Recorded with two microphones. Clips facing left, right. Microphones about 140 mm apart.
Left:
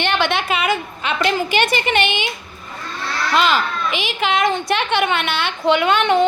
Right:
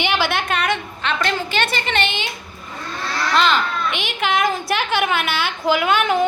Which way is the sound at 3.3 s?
5° left (ahead or behind).